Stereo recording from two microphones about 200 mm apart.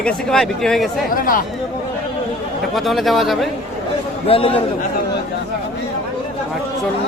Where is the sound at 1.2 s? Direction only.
45° left (ahead or behind).